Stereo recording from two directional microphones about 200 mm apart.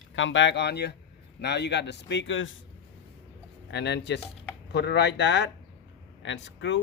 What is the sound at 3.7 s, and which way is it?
Speech, 55° left (ahead or behind).